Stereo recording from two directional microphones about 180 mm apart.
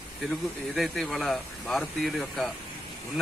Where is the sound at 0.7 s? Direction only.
Centre (ahead or behind).